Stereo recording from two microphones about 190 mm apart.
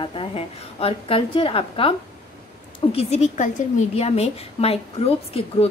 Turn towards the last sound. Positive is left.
turn(degrees=30)  # may be behind; listen again after turning